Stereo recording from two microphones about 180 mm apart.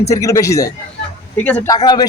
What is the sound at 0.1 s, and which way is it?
Speech, 15° left (ahead or behind).